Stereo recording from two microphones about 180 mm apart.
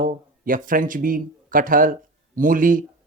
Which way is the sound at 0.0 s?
50° right (ahead or behind).